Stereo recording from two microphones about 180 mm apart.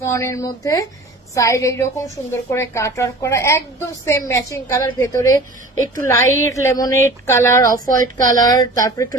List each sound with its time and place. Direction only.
0.0 s a woman's voice: 15° left (ahead or behind)